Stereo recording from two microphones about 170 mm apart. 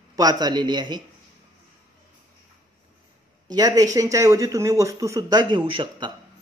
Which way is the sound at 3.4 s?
25° right (ahead or behind).